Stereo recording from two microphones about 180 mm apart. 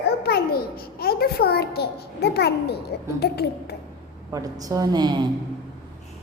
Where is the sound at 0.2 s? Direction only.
60° left (ahead or behind).